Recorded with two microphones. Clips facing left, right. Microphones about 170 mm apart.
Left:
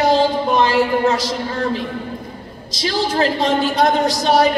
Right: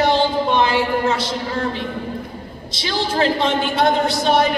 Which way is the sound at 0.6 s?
35° left (ahead or behind).